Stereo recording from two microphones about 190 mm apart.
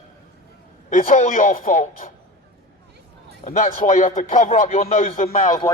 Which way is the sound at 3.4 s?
35° left (ahead or behind).